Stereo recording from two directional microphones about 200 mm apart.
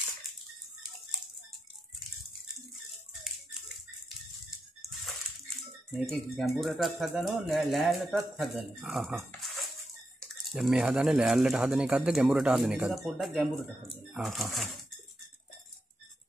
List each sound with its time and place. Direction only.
5.9 s speech: centre (ahead or behind)